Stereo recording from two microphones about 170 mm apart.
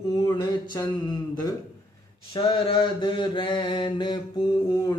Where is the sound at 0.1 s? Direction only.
25° left (ahead or behind).